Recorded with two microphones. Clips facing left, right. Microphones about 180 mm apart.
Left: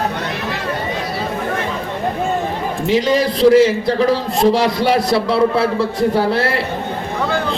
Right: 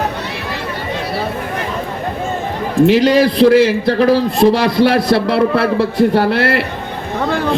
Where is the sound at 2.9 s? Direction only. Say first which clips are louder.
Right 1 dB; 65° right (ahead or behind).